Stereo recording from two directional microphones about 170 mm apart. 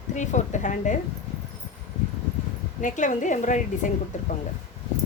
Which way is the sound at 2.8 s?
45° left (ahead or behind).